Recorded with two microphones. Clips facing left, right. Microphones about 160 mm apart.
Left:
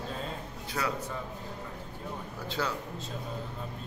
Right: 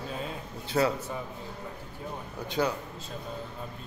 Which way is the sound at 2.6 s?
20° right (ahead or behind).